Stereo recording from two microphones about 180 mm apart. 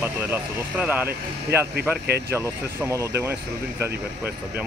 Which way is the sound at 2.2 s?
15° right (ahead or behind).